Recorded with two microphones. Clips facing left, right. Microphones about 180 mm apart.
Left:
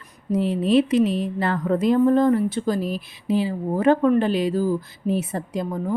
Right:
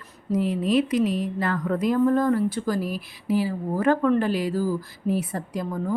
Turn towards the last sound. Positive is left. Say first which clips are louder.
# left 3 dB
turn(degrees=20)  # may be behind; listen again after turning